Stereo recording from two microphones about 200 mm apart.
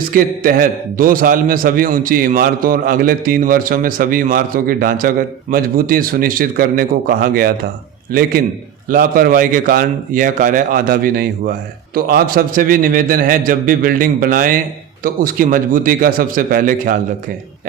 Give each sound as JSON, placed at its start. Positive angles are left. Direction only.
{"t": 0.1, "sound": "a man's voice", "side_deg": -45}